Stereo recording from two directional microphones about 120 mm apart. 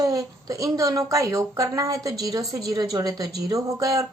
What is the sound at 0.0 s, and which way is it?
A woman's voice, 30° right (ahead or behind).